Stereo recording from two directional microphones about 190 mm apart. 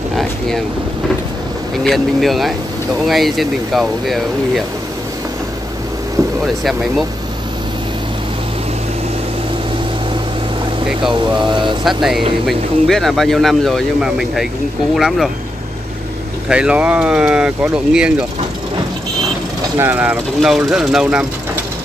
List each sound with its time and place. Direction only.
0.1 s boat: centre (ahead or behind)
1.9 s speech: centre (ahead or behind)
6.4 s speech: centre (ahead or behind)
11.3 s speech: 25° right (ahead or behind)
11.8 s speech: centre (ahead or behind)
16.4 s speech: 5° right (ahead or behind)
19.8 s speech: 10° right (ahead or behind)